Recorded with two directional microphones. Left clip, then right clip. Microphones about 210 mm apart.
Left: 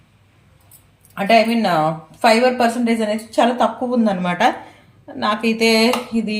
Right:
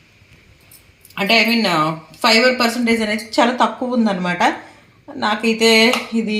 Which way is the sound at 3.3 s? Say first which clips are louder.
Right 1 dB; centre (ahead or behind).